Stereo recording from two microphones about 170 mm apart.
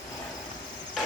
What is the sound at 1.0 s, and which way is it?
Vehicle, centre (ahead or behind).